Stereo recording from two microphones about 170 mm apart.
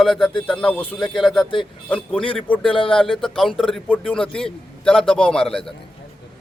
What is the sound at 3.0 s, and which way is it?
A man's voice, centre (ahead or behind).